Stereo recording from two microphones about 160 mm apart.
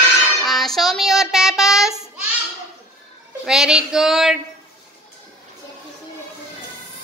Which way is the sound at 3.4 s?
5° right (ahead or behind).